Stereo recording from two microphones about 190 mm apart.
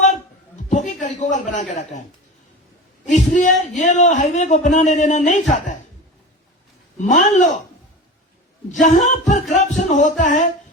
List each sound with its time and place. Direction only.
0.7 s a sound: 40° left (ahead or behind)
3.1 s speech: 40° left (ahead or behind)
7.0 s speech: 40° left (ahead or behind)
8.8 s speech: 40° left (ahead or behind)